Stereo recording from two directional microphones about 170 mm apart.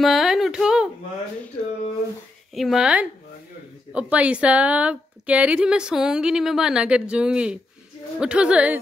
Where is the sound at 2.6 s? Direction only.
Centre (ahead or behind).